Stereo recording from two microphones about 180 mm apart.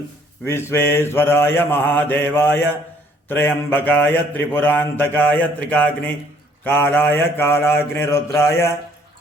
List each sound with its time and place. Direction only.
0.4 s mantra: 15° left (ahead or behind)